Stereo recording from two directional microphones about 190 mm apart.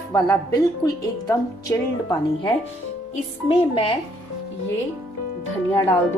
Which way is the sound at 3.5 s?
30° left (ahead or behind).